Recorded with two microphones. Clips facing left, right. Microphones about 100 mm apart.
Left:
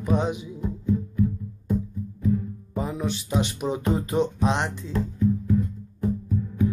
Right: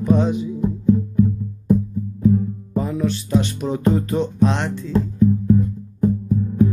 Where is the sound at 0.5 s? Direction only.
30° right (ahead or behind).